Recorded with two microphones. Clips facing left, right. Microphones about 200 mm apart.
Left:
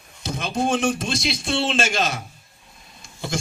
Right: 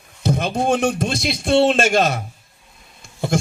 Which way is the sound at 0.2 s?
60° right (ahead or behind).